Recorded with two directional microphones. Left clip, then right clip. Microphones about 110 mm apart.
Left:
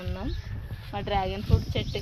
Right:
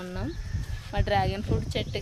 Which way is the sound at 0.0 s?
30° right (ahead or behind).